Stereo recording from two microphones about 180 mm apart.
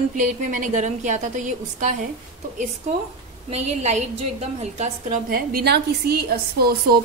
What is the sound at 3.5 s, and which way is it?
A woman's voice, 35° right (ahead or behind).